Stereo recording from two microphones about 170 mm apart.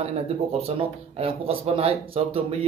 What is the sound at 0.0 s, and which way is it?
Speech, 35° right (ahead or behind).